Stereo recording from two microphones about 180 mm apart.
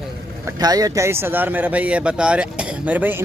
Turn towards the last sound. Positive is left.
turn(degrees=-10)  # may be behind; listen again after turning